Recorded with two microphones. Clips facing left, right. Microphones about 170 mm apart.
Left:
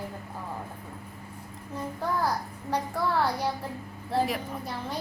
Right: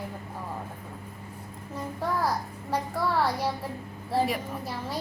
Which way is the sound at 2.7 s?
Centre (ahead or behind).